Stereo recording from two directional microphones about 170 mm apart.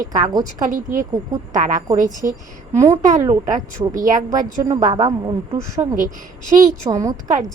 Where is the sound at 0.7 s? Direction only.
50° right (ahead or behind).